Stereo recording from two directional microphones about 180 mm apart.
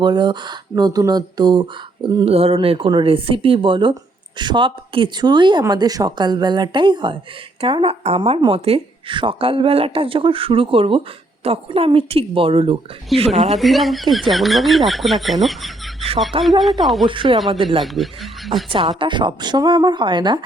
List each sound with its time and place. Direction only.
0.0 s a woman's voice: 25° right (ahead or behind)
13.4 s speech: centre (ahead or behind)
17.1 s speech: 25° right (ahead or behind)
17.8 s speech: centre (ahead or behind)
18.7 s speech: 30° right (ahead or behind)